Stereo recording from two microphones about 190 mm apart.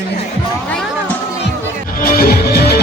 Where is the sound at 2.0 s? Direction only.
50° left (ahead or behind).